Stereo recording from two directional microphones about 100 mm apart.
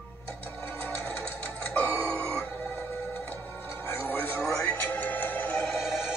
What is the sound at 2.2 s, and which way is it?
Music, 15° left (ahead or behind).